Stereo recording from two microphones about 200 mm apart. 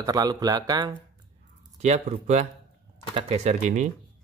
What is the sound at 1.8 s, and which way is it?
Speech, 35° right (ahead or behind).